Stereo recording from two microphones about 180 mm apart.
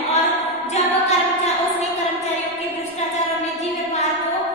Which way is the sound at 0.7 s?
35° left (ahead or behind).